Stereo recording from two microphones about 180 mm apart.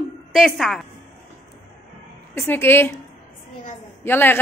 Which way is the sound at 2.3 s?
15° left (ahead or behind).